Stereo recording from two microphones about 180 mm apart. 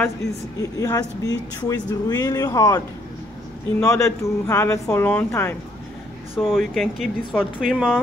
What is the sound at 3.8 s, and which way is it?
Speech, 15° left (ahead or behind).